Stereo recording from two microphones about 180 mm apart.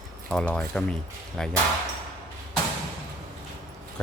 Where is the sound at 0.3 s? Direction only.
5° left (ahead or behind).